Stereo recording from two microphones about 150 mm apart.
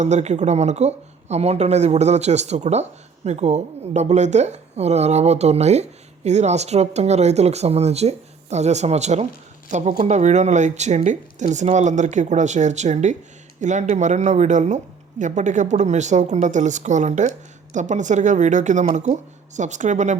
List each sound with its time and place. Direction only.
0.0 s a woman's voice: 50° right (ahead or behind)